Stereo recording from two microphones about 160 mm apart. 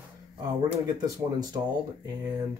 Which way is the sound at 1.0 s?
25° right (ahead or behind).